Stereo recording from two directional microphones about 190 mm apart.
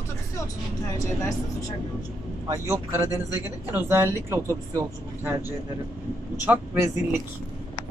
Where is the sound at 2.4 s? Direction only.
15° right (ahead or behind).